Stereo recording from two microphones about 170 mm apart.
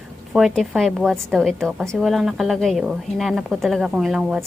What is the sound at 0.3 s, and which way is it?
A woman's voice, centre (ahead or behind).